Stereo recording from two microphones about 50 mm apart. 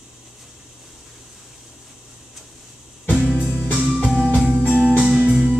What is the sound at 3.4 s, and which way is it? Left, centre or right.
Music, centre.